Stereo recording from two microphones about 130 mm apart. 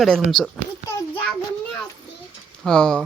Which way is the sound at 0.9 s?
20° left (ahead or behind).